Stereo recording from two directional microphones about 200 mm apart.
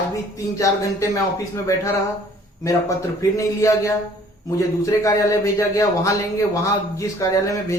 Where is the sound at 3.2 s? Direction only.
15° left (ahead or behind).